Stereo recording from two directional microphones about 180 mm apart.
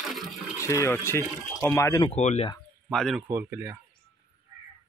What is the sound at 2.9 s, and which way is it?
Speech, centre (ahead or behind).